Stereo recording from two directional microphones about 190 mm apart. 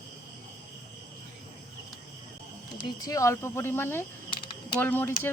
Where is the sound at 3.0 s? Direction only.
20° left (ahead or behind).